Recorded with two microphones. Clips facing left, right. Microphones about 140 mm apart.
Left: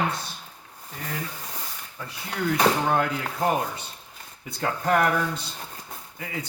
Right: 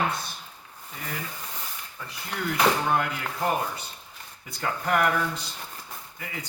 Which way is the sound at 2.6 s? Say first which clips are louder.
Left 1 dB; 30° left (ahead or behind).